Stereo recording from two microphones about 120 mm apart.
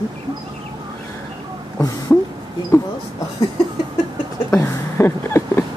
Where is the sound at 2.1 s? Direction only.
20° left (ahead or behind).